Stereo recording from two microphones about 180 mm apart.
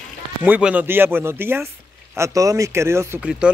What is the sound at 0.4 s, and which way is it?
Speech, 10° right (ahead or behind).